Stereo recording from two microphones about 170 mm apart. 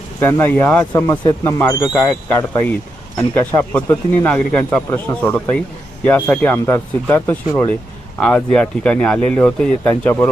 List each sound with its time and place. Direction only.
0.2 s speech: 15° left (ahead or behind)
1.1 s speech: 25° left (ahead or behind)
1.5 s speech: 15° left (ahead or behind)
3.2 s speech: 15° left (ahead or behind)